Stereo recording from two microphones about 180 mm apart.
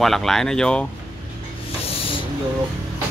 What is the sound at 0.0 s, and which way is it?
Speech, centre (ahead or behind).